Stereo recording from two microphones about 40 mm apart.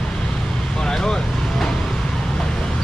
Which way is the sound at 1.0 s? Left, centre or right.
Centre.